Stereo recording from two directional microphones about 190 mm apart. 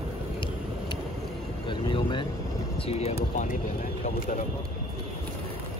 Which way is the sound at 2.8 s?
35° left (ahead or behind).